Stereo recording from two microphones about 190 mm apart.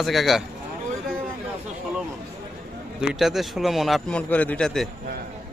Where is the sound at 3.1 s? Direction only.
Centre (ahead or behind).